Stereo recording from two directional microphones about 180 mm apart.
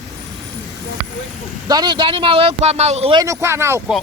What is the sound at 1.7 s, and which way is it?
Speech, 25° right (ahead or behind).